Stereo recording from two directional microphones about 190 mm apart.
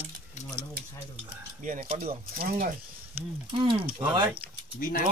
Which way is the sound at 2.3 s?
50° right (ahead or behind).